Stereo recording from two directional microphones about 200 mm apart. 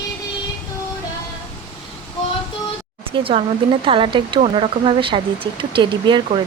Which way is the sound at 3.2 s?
25° right (ahead or behind).